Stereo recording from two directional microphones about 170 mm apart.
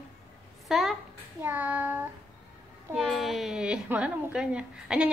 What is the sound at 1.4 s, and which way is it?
Child singing, 10° right (ahead or behind).